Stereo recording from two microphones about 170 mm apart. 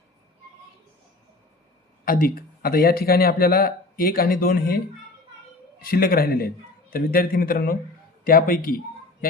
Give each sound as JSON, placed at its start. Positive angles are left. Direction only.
{"t": 2.0, "sound": "speech", "side_deg": 60}
{"t": 5.8, "sound": "speech", "side_deg": 60}